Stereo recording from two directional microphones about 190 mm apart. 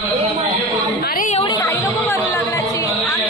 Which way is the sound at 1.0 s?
45° left (ahead or behind).